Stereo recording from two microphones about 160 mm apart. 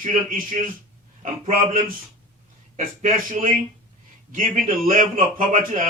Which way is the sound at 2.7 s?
55° right (ahead or behind).